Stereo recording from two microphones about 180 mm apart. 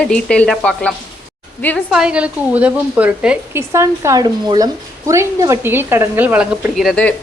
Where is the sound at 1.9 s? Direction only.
5° right (ahead or behind).